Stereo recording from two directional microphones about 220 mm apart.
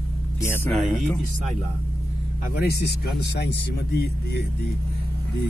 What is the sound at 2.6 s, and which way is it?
Speech, 45° left (ahead or behind).